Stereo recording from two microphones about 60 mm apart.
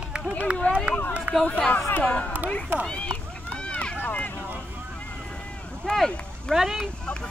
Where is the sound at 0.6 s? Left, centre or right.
Left.